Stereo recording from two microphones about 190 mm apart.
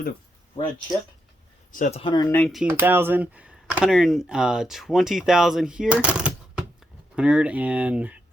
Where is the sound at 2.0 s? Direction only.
20° left (ahead or behind).